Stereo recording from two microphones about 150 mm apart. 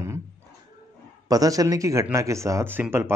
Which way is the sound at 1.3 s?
25° right (ahead or behind).